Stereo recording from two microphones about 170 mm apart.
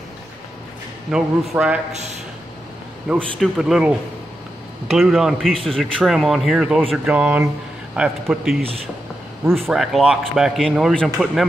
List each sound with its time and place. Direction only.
1.1 s speech: 5° right (ahead or behind)
3.3 s speech: 5° right (ahead or behind)
4.9 s speech: centre (ahead or behind)